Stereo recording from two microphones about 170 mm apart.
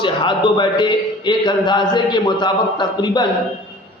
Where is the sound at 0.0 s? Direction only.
25° left (ahead or behind).